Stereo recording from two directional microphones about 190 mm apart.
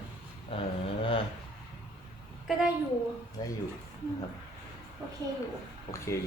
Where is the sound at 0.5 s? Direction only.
30° left (ahead or behind).